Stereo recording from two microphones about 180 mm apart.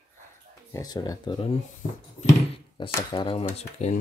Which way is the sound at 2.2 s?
40° left (ahead or behind).